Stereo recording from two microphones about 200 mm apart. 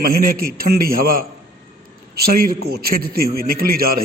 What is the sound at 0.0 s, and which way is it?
A man's voice, 45° right (ahead or behind).